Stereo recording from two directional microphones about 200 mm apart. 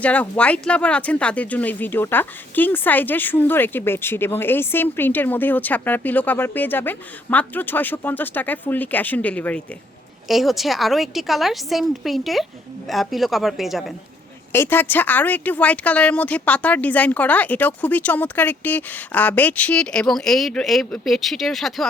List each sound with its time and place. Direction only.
0.0 s a woman's voice: 5° left (ahead or behind)
14.5 s speech: 10° left (ahead or behind)